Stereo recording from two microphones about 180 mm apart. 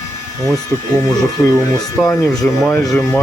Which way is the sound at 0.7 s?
15° left (ahead or behind).